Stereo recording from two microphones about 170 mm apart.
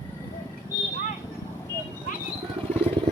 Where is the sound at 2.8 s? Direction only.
35° right (ahead or behind).